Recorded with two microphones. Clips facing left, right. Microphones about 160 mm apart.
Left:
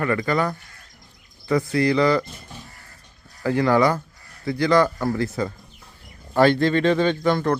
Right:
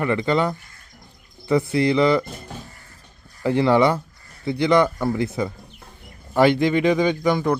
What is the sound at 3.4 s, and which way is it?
Speech, 25° right (ahead or behind).